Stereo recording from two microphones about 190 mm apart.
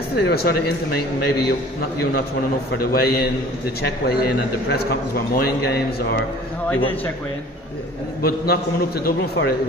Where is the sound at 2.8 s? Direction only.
55° left (ahead or behind).